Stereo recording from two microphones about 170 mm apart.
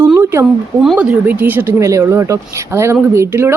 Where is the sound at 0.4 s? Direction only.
Centre (ahead or behind).